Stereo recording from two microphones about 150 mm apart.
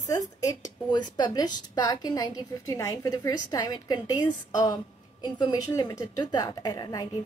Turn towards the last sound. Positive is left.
turn(degrees=25)  # may be behind; listen again after turning